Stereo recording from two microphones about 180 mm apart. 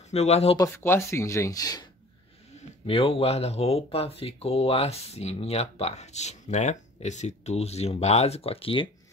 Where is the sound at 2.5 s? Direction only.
30° left (ahead or behind).